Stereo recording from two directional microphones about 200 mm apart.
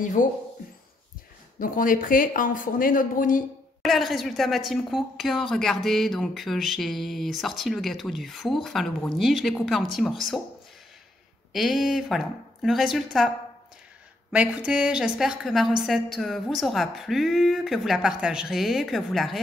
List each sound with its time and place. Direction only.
0.0 s speech: 40° left (ahead or behind)
1.6 s speech: 40° left (ahead or behind)
3.8 s a woman's voice: centre (ahead or behind)
11.5 s a woman's voice: centre (ahead or behind)
14.3 s a woman's voice: 5° right (ahead or behind)